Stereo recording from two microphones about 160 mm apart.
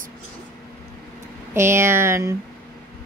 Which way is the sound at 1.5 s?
15° right (ahead or behind).